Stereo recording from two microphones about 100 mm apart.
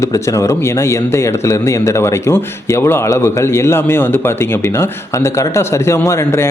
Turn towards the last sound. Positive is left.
turn(degrees=30)  # may be behind; listen again after turning